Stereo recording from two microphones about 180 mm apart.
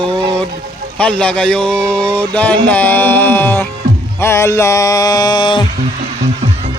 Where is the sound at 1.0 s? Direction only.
5° left (ahead or behind).